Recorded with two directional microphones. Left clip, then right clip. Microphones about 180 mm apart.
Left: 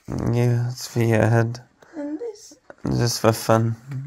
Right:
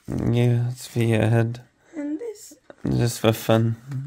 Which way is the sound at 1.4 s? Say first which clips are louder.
Left 1 dB; 30° right (ahead or behind).